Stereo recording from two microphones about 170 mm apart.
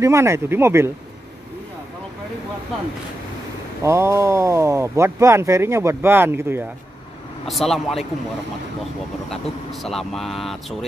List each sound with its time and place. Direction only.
0.0 s speech: 15° right (ahead or behind)
3.8 s speech: 15° right (ahead or behind)
7.4 s speech: centre (ahead or behind)
9.3 s speech: centre (ahead or behind)